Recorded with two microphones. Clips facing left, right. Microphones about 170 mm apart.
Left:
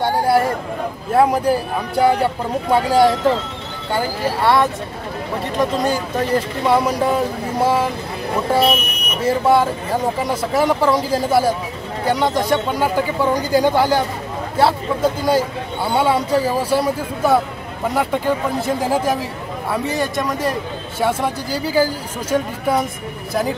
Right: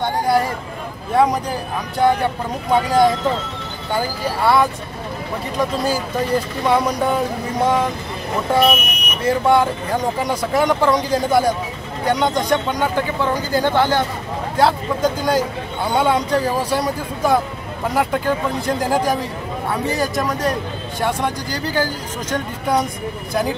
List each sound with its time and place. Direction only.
1.1 s a man's voice: 5° left (ahead or behind)
8.5 s speech: 30° left (ahead or behind)
9.2 s a man's voice: 5° left (ahead or behind)